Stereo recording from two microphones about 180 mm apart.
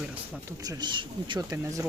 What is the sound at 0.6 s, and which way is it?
Speech, 20° right (ahead or behind).